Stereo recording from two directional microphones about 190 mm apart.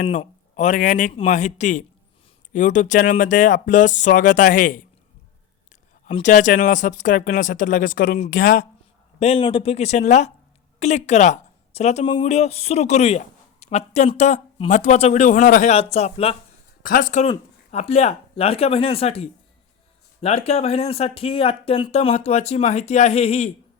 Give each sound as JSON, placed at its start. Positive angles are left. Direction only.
{"t": 0.2, "sound": "a man's voice", "side_deg": 40}
{"t": 6.2, "sound": "speech", "side_deg": 40}
{"t": 9.1, "sound": "a woman's voice", "side_deg": 30}
{"t": 15.7, "sound": "speech", "side_deg": 30}
{"t": 16.8, "sound": "speech", "side_deg": 45}